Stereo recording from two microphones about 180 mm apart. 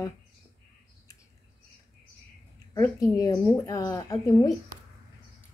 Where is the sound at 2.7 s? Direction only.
20° left (ahead or behind).